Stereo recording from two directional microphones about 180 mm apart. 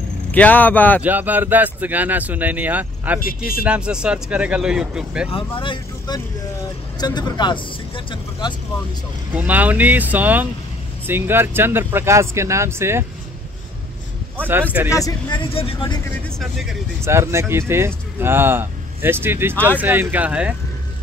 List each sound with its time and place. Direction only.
0.3 s speech: 10° left (ahead or behind)
1.0 s speech: 10° right (ahead or behind)
5.3 s speech: 25° left (ahead or behind)
9.3 s speech: 10° right (ahead or behind)
14.9 s speech: 20° left (ahead or behind)
17.0 s speech: 15° right (ahead or behind)